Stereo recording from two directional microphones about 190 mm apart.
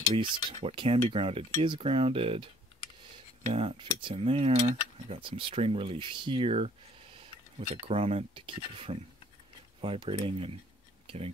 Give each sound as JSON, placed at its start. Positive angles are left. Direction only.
{"t": 0.2, "sound": "cutlery", "side_deg": -30}
{"t": 3.4, "sound": "cutlery", "side_deg": -30}
{"t": 7.8, "sound": "speech", "side_deg": -30}
{"t": 9.8, "sound": "cutlery", "side_deg": -30}
{"t": 11.1, "sound": "speech", "side_deg": -30}